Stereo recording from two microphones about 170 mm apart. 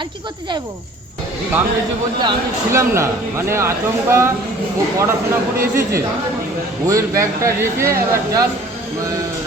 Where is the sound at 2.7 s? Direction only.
15° right (ahead or behind).